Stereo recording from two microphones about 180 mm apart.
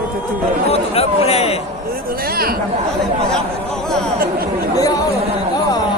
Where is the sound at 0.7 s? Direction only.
35° left (ahead or behind).